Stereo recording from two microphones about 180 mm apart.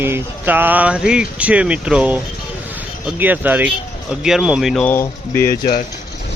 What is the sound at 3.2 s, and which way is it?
Speech, 10° right (ahead or behind).